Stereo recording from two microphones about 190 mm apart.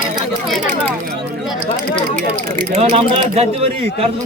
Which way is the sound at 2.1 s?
30° right (ahead or behind).